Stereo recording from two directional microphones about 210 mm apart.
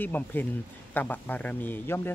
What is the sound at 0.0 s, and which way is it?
A man's voice, 10° left (ahead or behind).